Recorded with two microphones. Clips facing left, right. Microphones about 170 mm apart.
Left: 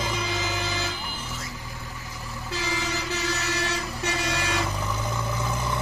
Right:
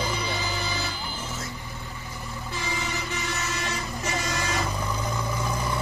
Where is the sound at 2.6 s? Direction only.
85° left.